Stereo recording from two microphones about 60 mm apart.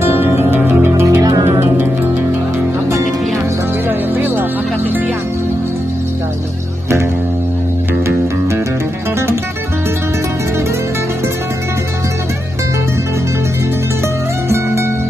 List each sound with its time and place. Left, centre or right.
0.0 s music: right
1.0 s music: right
4.1 s music: right